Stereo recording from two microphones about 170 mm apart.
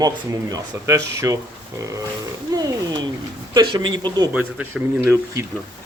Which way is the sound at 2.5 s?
25° right (ahead or behind).